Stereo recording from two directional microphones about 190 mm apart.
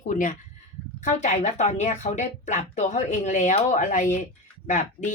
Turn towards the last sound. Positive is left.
turn(degrees=40)  # may be behind; listen again after turning